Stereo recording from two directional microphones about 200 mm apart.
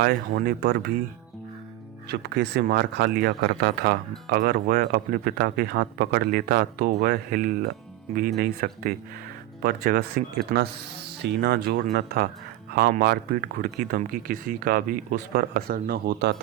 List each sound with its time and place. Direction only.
0.0 s speech: 50° right (ahead or behind)
2.0 s speech: 55° right (ahead or behind)